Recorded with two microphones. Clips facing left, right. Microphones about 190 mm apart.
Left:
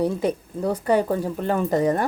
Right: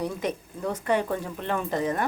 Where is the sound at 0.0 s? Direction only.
35° left (ahead or behind).